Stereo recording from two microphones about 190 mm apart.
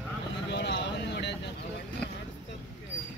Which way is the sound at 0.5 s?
65° left (ahead or behind).